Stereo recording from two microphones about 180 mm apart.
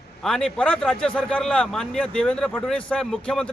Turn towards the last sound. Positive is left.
turn(degrees=5)  # may be behind; listen again after turning